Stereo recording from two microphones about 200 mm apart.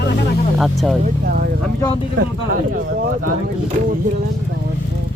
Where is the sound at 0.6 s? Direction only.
Centre (ahead or behind).